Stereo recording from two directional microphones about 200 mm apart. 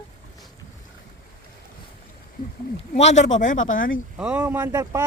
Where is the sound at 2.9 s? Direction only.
35° left (ahead or behind).